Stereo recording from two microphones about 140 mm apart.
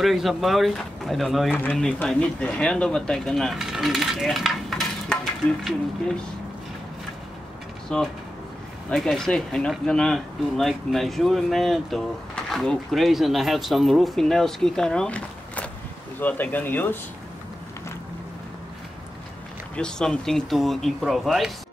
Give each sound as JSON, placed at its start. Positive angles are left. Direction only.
{"t": 0.0, "sound": "speech", "side_deg": 0}
{"t": 1.5, "sound": "speech", "side_deg": 10}
{"t": 7.9, "sound": "speech", "side_deg": 5}
{"t": 19.7, "sound": "speech", "side_deg": 5}